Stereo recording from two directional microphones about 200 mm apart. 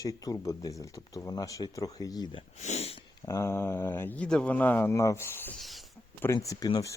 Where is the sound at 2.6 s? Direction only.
35° left (ahead or behind).